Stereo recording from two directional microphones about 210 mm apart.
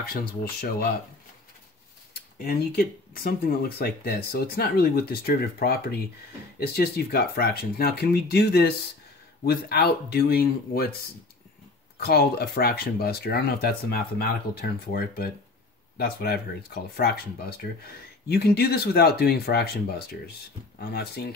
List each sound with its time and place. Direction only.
0.0 s speech: 45° left (ahead or behind)
2.4 s speech: 45° left (ahead or behind)
12.0 s speech: 50° left (ahead or behind)